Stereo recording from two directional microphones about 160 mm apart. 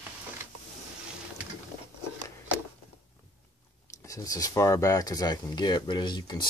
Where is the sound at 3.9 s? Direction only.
20° left (ahead or behind).